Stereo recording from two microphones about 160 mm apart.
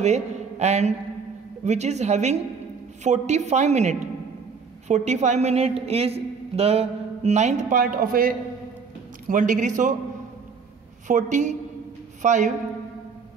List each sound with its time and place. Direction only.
0.0 s a man's voice: 45° right (ahead or behind); by 8.4 s 65° right (ahead or behind)
9.3 s a woman's voice: 55° right (ahead or behind)
11.1 s a woman's voice: 50° right (ahead or behind)